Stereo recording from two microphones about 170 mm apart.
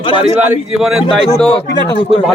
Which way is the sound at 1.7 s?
80° left.